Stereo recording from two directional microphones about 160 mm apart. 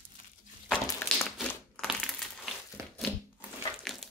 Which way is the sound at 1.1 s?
Centre (ahead or behind).